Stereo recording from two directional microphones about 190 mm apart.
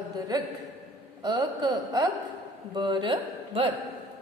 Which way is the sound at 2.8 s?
25° right (ahead or behind).